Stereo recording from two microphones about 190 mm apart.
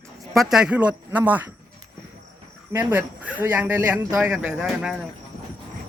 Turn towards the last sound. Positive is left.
turn(degrees=-5)  # may be behind; listen again after turning